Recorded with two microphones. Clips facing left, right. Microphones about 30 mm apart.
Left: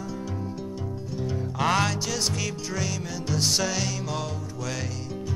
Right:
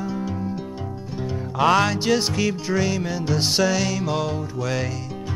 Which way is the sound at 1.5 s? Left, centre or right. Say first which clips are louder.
Right 6 dB; centre.